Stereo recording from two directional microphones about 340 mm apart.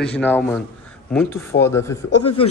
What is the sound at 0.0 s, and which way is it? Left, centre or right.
A man's voice, centre.